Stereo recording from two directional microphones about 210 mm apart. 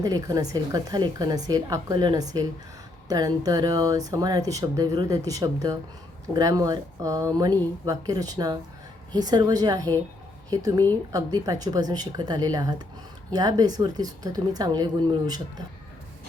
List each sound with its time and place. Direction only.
0.0 s a woman's voice: 20° right (ahead or behind)